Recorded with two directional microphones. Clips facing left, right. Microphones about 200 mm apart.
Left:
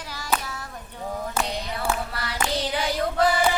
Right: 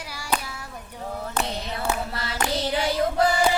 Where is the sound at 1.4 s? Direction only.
10° left (ahead or behind).